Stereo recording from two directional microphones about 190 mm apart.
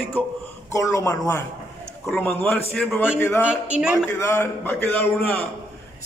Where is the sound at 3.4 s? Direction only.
5° right (ahead or behind).